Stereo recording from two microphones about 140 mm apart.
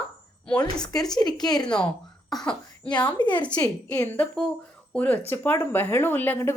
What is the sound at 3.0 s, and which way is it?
Speech, 35° left (ahead or behind).